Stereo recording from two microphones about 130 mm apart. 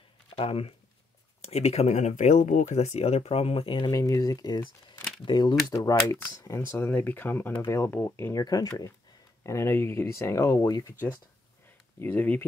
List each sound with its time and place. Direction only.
0.3 s speech: 45° left (ahead or behind)
3.9 s speech: 25° left (ahead or behind)
4.9 s a sound: 5° left (ahead or behind)
5.2 s speech: 35° left (ahead or behind)
12.0 s speech: 15° left (ahead or behind)